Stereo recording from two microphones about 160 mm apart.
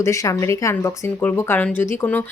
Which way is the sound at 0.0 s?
20° left (ahead or behind).